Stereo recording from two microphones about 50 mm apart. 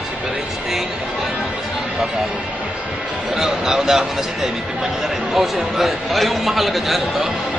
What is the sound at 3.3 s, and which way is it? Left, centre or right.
A man's voice, centre.